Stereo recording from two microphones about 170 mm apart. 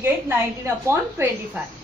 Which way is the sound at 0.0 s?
15° right (ahead or behind).